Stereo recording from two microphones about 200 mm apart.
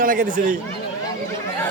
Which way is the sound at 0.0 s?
45° right (ahead or behind).